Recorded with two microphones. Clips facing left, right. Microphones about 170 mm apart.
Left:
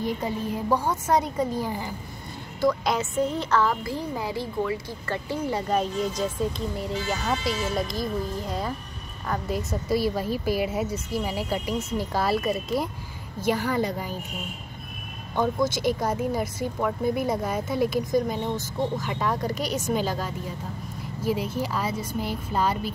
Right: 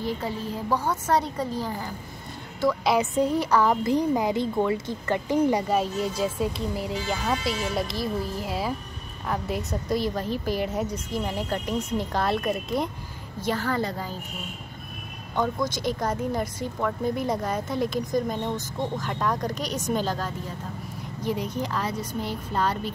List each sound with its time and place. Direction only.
0.0 s a woman's voice: 15° left (ahead or behind)
2.6 s speech: 5° right (ahead or behind)
3.0 s a woman's voice: 15° right (ahead or behind); by 14.1 s 15° left (ahead or behind)
15.3 s a woman's voice: 10° left (ahead or behind)